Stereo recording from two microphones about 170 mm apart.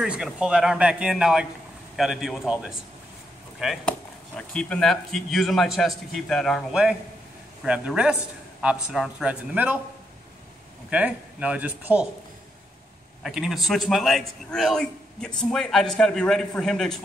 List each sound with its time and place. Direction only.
0.0 s a man's voice: 5° right (ahead or behind)
3.5 s a man's voice: centre (ahead or behind)
10.9 s speech: 10° right (ahead or behind)
13.2 s a man's voice: centre (ahead or behind)